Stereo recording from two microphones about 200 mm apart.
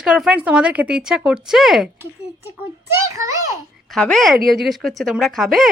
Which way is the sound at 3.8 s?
5° left (ahead or behind).